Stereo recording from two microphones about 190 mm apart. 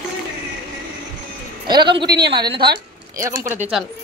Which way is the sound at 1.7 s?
25° right (ahead or behind).